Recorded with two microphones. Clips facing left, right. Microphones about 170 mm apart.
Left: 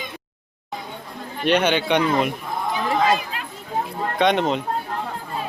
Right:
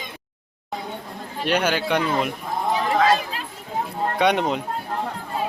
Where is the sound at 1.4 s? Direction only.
5° right (ahead or behind).